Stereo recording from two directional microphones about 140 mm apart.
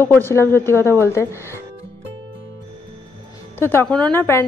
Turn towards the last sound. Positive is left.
turn(degrees=15)  # may be behind; listen again after turning